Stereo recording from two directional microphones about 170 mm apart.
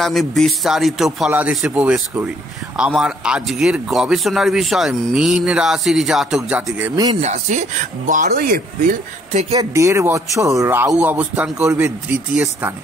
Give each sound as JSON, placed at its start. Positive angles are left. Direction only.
{"t": 0.0, "sound": "a man's voice", "side_deg": 0}
{"t": 7.2, "sound": "speech", "side_deg": -40}
{"t": 9.6, "sound": "a man's voice", "side_deg": -15}